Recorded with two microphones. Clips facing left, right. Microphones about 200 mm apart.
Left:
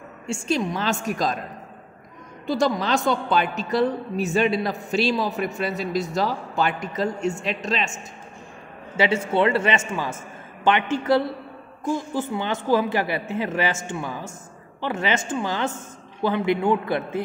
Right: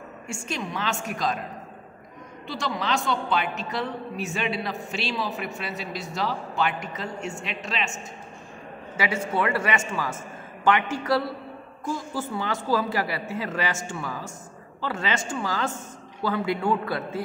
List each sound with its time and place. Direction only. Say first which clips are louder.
0.3 s a woman's voice: left 8 dB; 35° left (ahead or behind)
2.4 s a woman's voice: left 7 dB; 40° left (ahead or behind)
8.9 s speech: left 5 dB; 25° left (ahead or behind)